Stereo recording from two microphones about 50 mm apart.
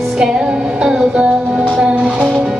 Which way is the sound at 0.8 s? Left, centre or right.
Centre.